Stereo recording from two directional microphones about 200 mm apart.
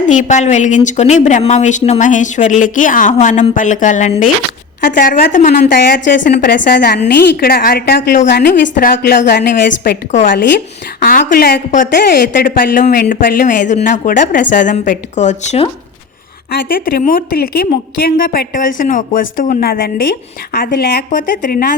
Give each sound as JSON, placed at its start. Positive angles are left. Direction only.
{"t": 0.1, "sound": "a woman's voice", "side_deg": 35}
{"t": 8.3, "sound": "a woman's voice", "side_deg": 55}
{"t": 11.0, "sound": "a woman's voice", "side_deg": 45}
{"t": 16.5, "sound": "a woman's voice", "side_deg": 50}